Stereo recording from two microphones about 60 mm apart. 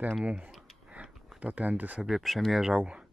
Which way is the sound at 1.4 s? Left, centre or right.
Right.